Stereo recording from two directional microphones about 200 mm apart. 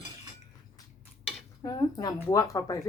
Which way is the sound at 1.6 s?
20° left (ahead or behind).